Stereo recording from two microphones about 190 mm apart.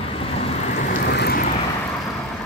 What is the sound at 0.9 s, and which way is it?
Vehicle, 60° left (ahead or behind).